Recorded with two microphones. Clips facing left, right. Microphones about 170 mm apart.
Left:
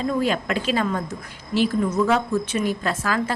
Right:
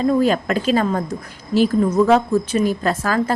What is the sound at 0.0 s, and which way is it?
A woman's voice, 40° right (ahead or behind).